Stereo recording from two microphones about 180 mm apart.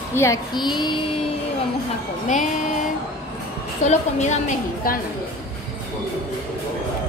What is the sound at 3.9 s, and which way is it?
A woman's voice, 40° left (ahead or behind).